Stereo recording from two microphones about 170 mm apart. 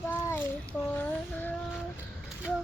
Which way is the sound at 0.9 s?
10° left (ahead or behind).